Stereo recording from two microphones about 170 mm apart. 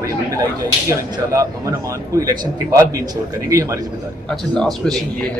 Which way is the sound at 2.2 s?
20° right (ahead or behind).